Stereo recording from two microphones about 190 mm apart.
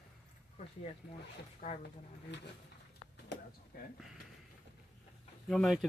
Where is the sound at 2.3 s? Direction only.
65° left (ahead or behind).